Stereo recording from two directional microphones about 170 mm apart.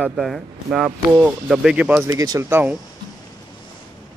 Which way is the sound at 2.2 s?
20° right (ahead or behind).